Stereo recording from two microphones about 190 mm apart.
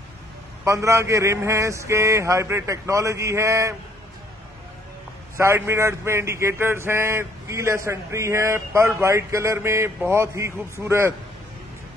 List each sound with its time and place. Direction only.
0.7 s speech: 15° right (ahead or behind)
5.4 s speech: 15° right (ahead or behind)